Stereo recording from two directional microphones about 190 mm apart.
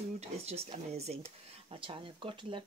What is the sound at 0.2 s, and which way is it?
Speech, 35° right (ahead or behind).